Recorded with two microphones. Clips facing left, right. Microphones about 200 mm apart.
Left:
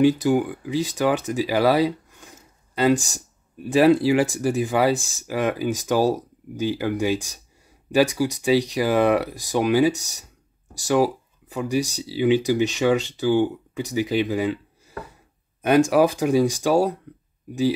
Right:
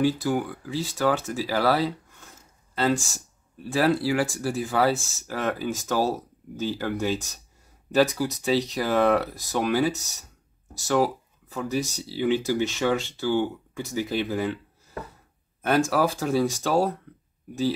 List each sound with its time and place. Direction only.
0.0 s speech: 20° left (ahead or behind)
15.6 s speech: 15° left (ahead or behind)